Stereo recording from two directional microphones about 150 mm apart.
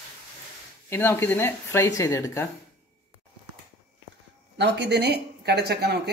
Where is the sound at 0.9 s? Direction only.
15° left (ahead or behind).